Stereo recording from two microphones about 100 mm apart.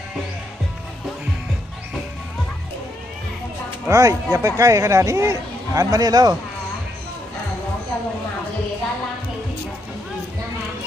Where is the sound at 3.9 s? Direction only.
35° right (ahead or behind).